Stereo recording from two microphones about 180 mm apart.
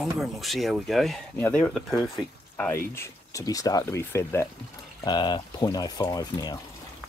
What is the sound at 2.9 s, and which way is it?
Speech, 15° left (ahead or behind).